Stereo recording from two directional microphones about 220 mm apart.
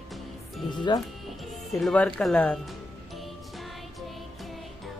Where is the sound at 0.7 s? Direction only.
20° left (ahead or behind).